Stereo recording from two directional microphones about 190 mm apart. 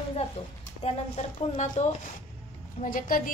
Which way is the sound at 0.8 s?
35° left (ahead or behind).